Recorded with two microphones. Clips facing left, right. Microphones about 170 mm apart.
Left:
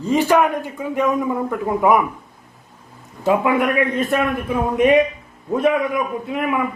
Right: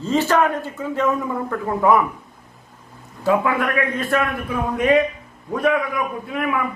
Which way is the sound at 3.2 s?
20° left (ahead or behind).